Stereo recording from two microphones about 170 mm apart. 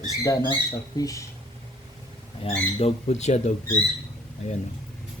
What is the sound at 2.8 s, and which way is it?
Speech, 40° left (ahead or behind).